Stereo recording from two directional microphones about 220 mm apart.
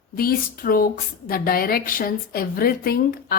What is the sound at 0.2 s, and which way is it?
A woman's voice, 40° left (ahead or behind).